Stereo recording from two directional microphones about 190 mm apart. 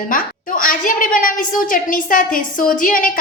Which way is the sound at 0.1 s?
45° left (ahead or behind).